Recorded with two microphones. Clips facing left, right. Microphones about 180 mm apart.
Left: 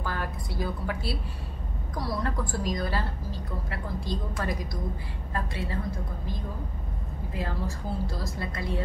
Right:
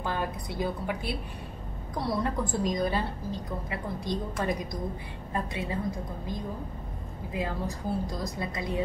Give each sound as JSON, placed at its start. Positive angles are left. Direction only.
{"t": 0.0, "sound": "a woman's voice", "side_deg": -20}
{"t": 7.3, "sound": "a woman's voice", "side_deg": -15}